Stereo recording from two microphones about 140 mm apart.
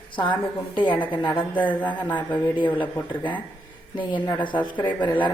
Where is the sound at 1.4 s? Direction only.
10° left (ahead or behind).